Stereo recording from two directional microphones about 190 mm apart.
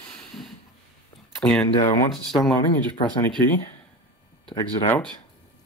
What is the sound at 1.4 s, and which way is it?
Speech, 5° left (ahead or behind).